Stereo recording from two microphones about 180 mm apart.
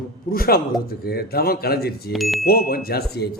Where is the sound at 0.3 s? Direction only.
55° left (ahead or behind).